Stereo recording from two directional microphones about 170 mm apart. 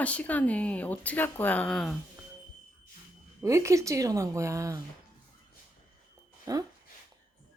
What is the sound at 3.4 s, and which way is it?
A woman's voice, 20° right (ahead or behind).